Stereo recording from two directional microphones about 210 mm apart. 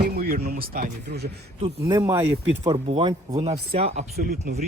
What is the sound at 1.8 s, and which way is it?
Speech, 15° right (ahead or behind).